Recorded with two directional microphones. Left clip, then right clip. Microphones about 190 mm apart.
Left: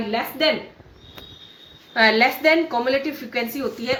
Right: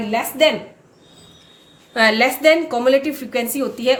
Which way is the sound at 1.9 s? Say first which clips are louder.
Right 1 dB; 60° right (ahead or behind).